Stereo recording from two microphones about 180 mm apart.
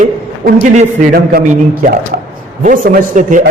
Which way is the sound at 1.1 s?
55° right (ahead or behind).